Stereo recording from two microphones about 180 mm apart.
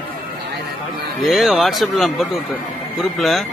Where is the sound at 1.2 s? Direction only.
Centre (ahead or behind).